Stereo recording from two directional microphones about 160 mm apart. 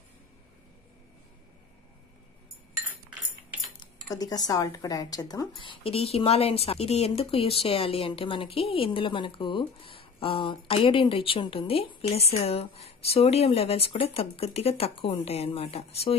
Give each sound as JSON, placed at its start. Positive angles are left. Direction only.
{"t": 4.1, "sound": "a woman's voice", "side_deg": 25}